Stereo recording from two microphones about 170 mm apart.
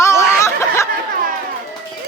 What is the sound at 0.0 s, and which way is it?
Snicker, 15° left (ahead or behind).